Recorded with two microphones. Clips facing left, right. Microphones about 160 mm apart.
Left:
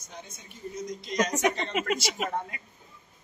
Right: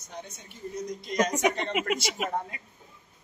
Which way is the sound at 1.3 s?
10° right (ahead or behind).